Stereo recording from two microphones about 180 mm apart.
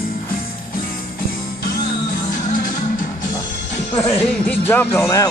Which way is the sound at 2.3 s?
45° left (ahead or behind).